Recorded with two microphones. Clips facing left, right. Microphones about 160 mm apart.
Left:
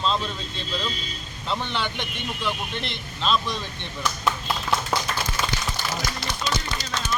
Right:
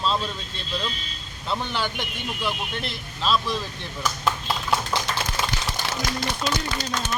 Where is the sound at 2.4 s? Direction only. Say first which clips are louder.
Even; 5° right (ahead or behind).